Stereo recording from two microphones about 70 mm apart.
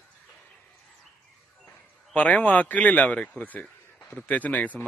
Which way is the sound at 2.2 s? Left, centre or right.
Centre.